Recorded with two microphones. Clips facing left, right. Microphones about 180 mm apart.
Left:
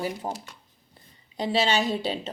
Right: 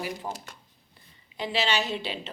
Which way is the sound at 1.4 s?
45° left (ahead or behind).